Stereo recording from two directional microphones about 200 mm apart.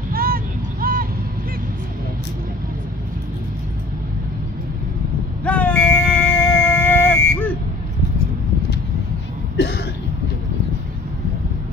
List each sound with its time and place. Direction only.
0.1 s vehicle: 45° right (ahead or behind)
5.4 s a sound: 5° left (ahead or behind)
9.6 s cough: 55° left (ahead or behind)